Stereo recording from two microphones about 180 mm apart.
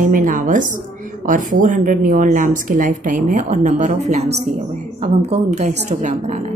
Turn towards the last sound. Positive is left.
turn(degrees=-40)  # may be behind; listen again after turning